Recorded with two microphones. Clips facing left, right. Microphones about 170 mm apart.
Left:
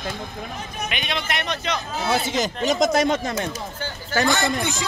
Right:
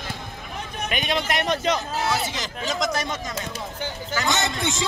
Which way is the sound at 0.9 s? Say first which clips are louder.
Right 4 dB; 45° right (ahead or behind).